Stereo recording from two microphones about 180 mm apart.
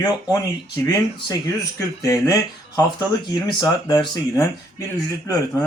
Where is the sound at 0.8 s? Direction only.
20° left (ahead or behind).